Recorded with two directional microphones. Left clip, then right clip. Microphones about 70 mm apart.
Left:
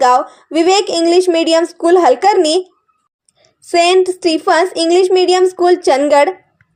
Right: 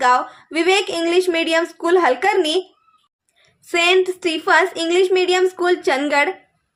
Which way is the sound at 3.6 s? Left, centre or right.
Left.